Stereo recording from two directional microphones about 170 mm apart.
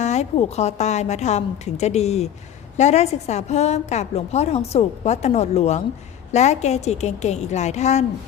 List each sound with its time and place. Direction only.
0.0 s a woman's voice: 40° left (ahead or behind)